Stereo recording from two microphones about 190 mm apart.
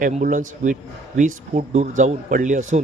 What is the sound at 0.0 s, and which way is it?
A man's voice, 45° right (ahead or behind).